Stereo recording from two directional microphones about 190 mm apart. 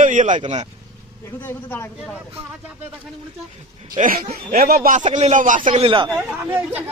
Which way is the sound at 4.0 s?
45° right (ahead or behind).